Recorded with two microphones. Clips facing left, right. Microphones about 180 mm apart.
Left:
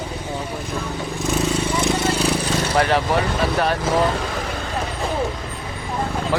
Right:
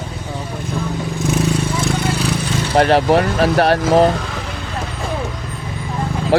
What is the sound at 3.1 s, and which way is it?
Speech, 70° right (ahead or behind).